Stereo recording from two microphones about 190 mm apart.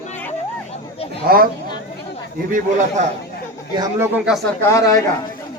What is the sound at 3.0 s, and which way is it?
Speech, 40° right (ahead or behind).